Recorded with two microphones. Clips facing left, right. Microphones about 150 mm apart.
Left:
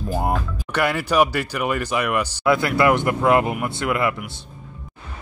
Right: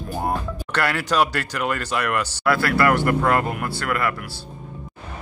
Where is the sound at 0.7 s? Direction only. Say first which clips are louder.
Left 2 dB; 15° left (ahead or behind).